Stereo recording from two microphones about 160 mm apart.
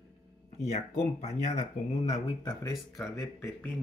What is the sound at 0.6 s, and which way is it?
Speech, 40° left (ahead or behind).